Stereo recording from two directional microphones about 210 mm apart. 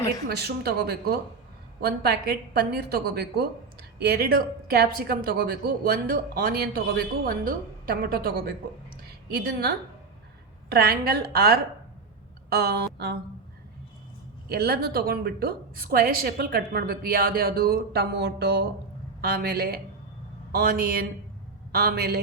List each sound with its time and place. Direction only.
0.3 s a woman's voice: 50° right (ahead or behind)
14.5 s a woman's voice: 50° right (ahead or behind)